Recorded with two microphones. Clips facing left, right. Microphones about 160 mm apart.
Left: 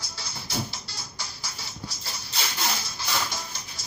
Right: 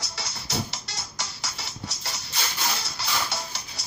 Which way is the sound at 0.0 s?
75° right (ahead or behind).